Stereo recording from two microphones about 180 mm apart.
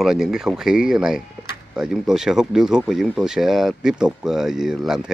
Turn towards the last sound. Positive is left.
turn(degrees=-5)  # may be behind; listen again after turning